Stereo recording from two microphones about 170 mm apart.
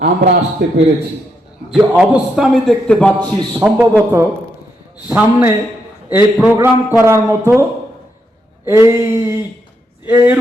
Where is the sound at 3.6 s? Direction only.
10° right (ahead or behind).